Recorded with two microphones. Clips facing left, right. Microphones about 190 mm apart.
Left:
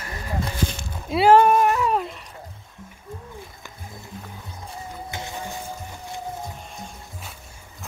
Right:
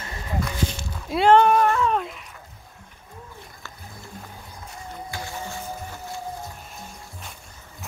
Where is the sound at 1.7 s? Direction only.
15° left (ahead or behind).